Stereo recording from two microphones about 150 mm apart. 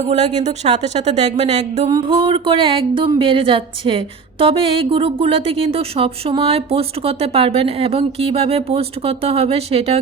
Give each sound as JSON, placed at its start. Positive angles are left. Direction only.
{"t": 0.0, "sound": "a woman's voice", "side_deg": -50}
{"t": 2.2, "sound": "a woman's voice", "side_deg": -35}